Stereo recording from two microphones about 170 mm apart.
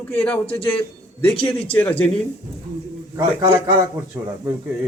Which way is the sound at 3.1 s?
15° right (ahead or behind).